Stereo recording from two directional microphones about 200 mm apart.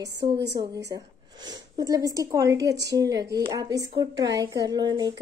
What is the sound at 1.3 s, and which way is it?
A woman's voice, 20° right (ahead or behind).